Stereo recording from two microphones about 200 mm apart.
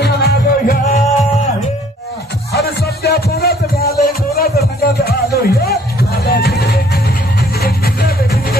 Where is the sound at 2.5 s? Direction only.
50° left (ahead or behind).